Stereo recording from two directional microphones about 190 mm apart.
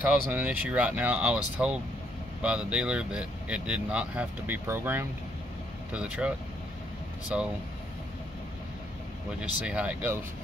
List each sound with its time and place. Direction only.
0.0 s speech: 10° right (ahead or behind)
2.4 s speech: 5° right (ahead or behind)
9.4 s speech: 5° right (ahead or behind)